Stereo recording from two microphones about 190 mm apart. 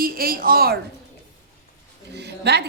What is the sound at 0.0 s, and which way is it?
Speech, 50° right (ahead or behind).